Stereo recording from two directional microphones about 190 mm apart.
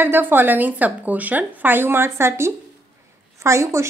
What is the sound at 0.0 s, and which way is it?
Speech, 10° right (ahead or behind).